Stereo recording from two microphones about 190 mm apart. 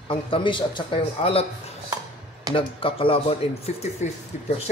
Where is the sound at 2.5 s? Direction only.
30° left (ahead or behind).